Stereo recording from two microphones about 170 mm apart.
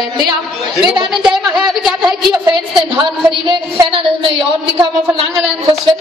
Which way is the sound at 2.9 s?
30° right (ahead or behind).